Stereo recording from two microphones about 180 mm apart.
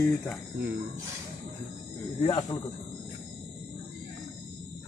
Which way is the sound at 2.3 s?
25° left (ahead or behind).